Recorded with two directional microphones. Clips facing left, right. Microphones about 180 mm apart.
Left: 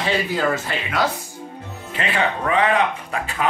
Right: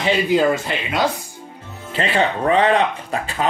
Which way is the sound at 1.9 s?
35° right (ahead or behind).